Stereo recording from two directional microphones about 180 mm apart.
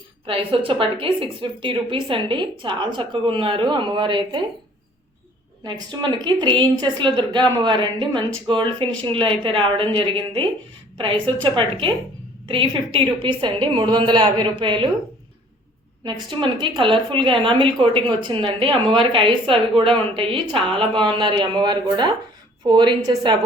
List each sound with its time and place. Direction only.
0.3 s a woman's voice: 30° right (ahead or behind)
5.6 s a woman's voice: 25° right (ahead or behind)
16.3 s a woman's voice: 25° right (ahead or behind)